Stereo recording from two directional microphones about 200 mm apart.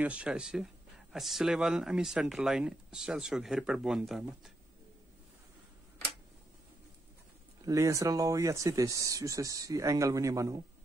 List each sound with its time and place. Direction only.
0.0 s speech: 5° right (ahead or behind)
7.6 s speech: 15° right (ahead or behind)